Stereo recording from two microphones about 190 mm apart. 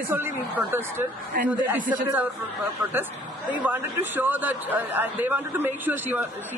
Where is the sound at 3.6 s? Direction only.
10° right (ahead or behind).